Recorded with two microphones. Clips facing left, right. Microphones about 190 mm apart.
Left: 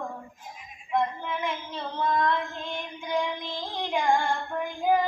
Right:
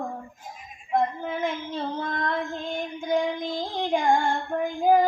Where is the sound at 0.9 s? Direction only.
45° right (ahead or behind).